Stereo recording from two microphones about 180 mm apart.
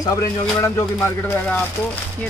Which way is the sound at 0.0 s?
15° left (ahead or behind).